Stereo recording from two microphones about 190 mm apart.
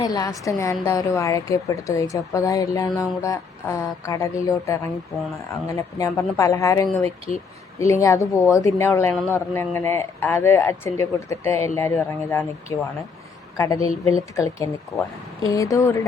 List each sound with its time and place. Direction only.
0.0 s speech: 20° left (ahead or behind)